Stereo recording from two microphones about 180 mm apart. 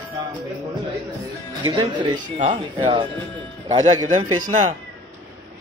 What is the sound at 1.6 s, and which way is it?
Speech, 25° right (ahead or behind).